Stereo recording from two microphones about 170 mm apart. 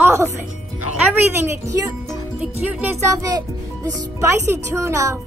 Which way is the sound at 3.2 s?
20° right (ahead or behind).